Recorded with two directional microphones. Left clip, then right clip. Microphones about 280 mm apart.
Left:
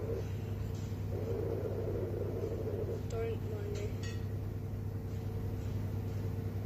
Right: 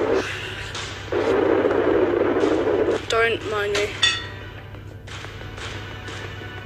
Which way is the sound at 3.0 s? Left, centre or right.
Right.